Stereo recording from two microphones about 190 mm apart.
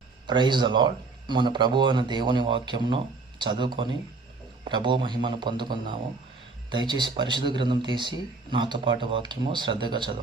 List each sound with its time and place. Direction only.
0.3 s speech: 25° right (ahead or behind)